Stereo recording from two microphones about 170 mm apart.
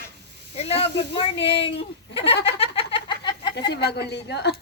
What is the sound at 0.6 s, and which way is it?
Speech, 35° left (ahead or behind).